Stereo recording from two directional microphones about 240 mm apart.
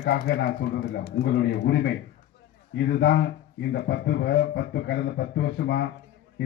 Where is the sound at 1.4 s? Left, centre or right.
Left.